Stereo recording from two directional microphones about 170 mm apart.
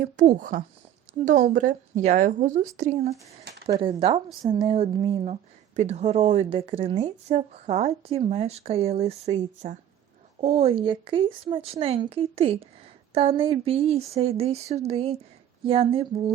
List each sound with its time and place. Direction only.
0.0 s a woman's voice: 50° right (ahead or behind); by 16.3 s 35° right (ahead or behind)